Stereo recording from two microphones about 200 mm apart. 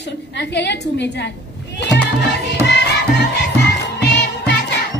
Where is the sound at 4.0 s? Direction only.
60° left (ahead or behind).